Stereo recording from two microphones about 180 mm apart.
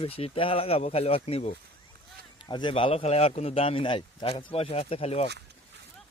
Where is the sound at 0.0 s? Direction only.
30° left (ahead or behind).